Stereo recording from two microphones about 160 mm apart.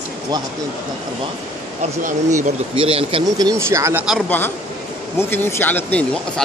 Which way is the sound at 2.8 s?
35° right (ahead or behind).